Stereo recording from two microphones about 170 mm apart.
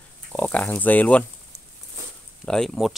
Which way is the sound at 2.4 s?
5° left (ahead or behind).